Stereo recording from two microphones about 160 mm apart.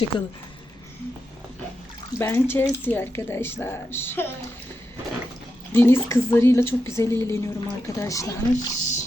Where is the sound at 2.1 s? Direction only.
15° left (ahead or behind).